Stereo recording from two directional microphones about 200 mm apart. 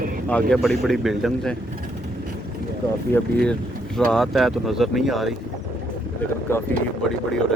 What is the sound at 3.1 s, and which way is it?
Speech, 5° left (ahead or behind).